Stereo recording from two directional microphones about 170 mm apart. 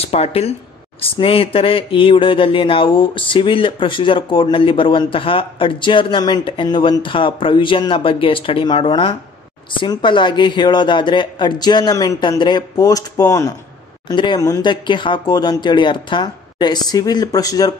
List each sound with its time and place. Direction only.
0.0 s speech: 35° left (ahead or behind)